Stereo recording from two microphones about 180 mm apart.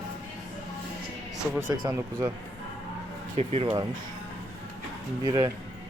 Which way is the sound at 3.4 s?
35° right (ahead or behind).